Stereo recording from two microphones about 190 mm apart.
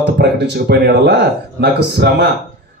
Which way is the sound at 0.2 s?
55° right (ahead or behind).